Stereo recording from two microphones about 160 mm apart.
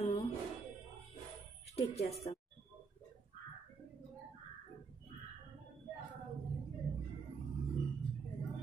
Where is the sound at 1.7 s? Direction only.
40° left (ahead or behind).